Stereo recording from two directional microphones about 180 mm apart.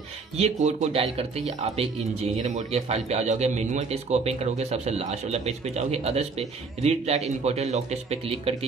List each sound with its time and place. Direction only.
0.4 s a man's voice: 35° right (ahead or behind)